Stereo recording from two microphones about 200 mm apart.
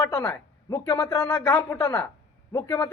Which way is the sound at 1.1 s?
5° left (ahead or behind).